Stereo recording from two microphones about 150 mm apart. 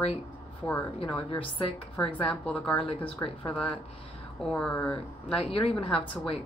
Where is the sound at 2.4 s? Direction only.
10° left (ahead or behind).